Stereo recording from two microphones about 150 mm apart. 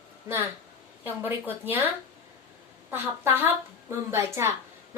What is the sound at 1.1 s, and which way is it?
A woman's voice, 15° right (ahead or behind).